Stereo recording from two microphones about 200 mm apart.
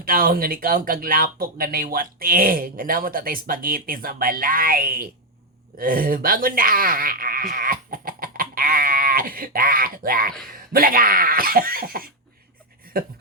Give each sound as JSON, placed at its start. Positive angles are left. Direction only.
{"t": 0.0, "sound": "speech", "side_deg": -45}